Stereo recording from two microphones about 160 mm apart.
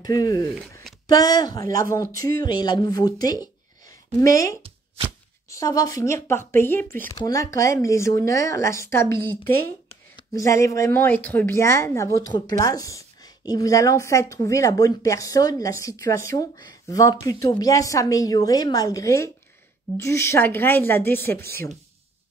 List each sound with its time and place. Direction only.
0.0 s speech: 25° left (ahead or behind)
4.6 s chopping: 35° right (ahead or behind)
5.5 s speech: 20° left (ahead or behind)